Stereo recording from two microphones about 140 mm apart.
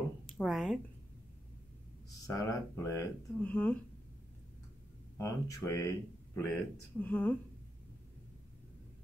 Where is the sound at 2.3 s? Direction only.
25° left (ahead or behind).